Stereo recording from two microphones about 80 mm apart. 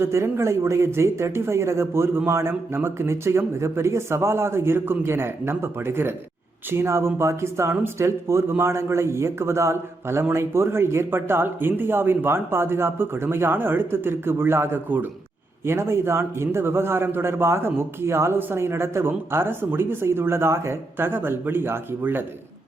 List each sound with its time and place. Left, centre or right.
0.0 s a man's voice: right